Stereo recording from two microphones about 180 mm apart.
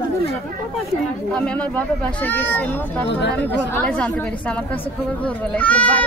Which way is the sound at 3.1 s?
70° left (ahead or behind).